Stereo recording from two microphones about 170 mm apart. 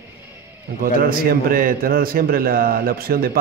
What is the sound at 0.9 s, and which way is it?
Speech, 55° right (ahead or behind).